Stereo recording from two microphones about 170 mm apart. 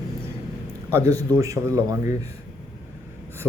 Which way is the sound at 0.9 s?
15° right (ahead or behind).